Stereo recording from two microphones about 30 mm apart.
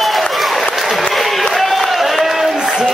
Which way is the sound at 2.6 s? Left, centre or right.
Right.